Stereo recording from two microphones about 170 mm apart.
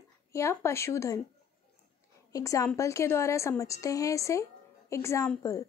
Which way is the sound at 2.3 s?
20° left (ahead or behind).